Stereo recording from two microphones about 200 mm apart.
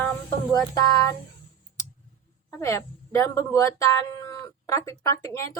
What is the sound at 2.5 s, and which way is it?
A woman's voice, 15° left (ahead or behind).